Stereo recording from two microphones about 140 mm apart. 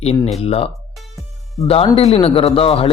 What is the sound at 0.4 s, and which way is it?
Speech, 45° left (ahead or behind).